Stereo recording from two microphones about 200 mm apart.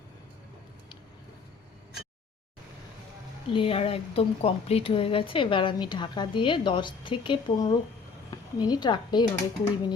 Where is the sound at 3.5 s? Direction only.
25° left (ahead or behind).